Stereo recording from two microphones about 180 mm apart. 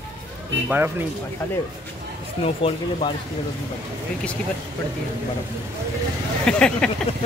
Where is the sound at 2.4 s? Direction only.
30° left (ahead or behind).